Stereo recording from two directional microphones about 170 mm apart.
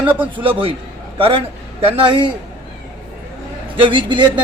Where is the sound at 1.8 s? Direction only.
35° right (ahead or behind).